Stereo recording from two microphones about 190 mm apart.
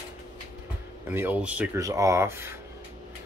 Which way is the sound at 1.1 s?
10° right (ahead or behind).